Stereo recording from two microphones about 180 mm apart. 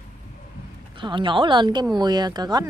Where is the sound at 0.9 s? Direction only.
25° right (ahead or behind).